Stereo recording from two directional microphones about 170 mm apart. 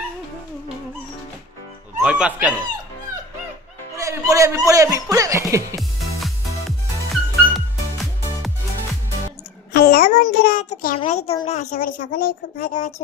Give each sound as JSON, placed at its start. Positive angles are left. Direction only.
{"t": 2.0, "sound": "speech", "side_deg": -5}
{"t": 3.9, "sound": "speech", "side_deg": -20}
{"t": 7.1, "sound": "music", "side_deg": 0}
{"t": 9.7, "sound": "child singing", "side_deg": 65}
{"t": 11.1, "sound": "a woman's voice", "side_deg": 40}